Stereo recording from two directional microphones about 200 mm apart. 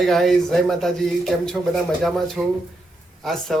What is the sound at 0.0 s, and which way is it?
Speech, centre (ahead or behind).